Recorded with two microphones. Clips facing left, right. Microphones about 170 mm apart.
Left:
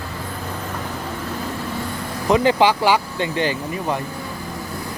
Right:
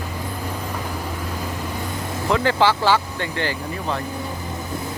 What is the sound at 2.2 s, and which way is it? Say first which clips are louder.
Speech: left 3 dB; 15° left (ahead or behind).